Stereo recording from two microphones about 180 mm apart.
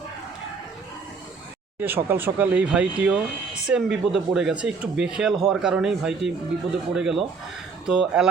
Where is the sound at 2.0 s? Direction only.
10° right (ahead or behind).